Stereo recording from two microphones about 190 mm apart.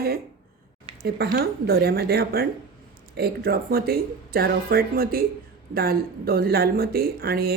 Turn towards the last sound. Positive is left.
turn(degrees=-55)  # may be behind; listen again after turning